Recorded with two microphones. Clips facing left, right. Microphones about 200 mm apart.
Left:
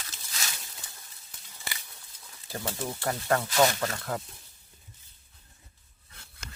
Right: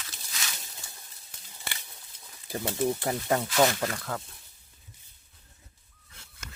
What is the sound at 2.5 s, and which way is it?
Speech, 15° right (ahead or behind).